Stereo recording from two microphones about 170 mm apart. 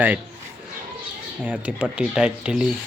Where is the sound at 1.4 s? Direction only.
5° right (ahead or behind).